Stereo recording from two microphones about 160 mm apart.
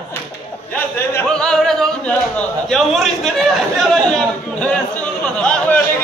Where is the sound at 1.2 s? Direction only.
5° left (ahead or behind).